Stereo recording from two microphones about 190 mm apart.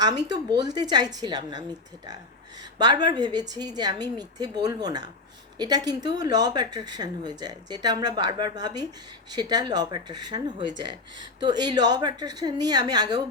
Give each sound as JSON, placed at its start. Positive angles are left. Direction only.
{"t": 0.6, "sound": "speech", "side_deg": -20}
{"t": 2.7, "sound": "speech", "side_deg": -20}